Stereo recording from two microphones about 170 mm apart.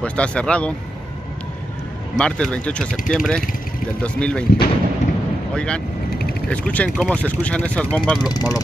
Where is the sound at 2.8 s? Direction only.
50° left (ahead or behind).